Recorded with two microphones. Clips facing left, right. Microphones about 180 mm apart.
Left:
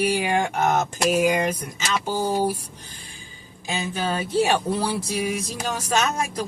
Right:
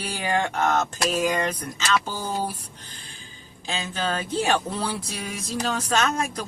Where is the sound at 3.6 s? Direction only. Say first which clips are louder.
Left 2 dB; 15° left (ahead or behind).